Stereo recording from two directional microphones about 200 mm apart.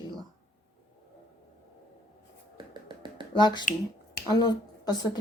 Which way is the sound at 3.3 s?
20° left (ahead or behind).